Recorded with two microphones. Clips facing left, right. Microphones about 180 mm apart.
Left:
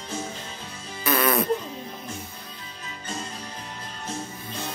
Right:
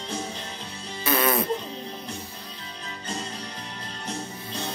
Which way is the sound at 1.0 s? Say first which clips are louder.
Left 1 dB; 25° right (ahead or behind).